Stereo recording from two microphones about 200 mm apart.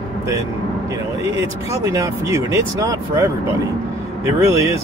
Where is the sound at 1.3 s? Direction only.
15° right (ahead or behind).